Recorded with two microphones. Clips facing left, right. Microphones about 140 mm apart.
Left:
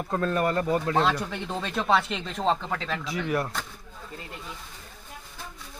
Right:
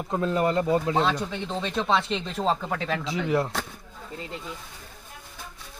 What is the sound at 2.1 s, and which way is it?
Speech, centre (ahead or behind).